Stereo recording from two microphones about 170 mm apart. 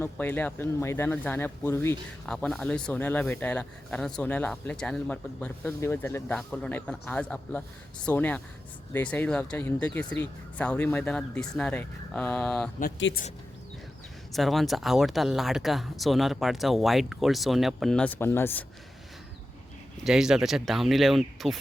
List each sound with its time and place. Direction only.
0.0 s speech: 10° left (ahead or behind)
2.2 s speech: 5° left (ahead or behind)
12.8 s speech: 75° left (ahead or behind)
14.3 s speech: centre (ahead or behind)
20.1 s speech: 5° right (ahead or behind)